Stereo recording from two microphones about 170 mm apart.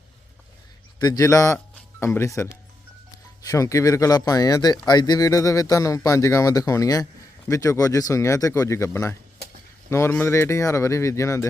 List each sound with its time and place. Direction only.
0.9 s speech: 25° left (ahead or behind)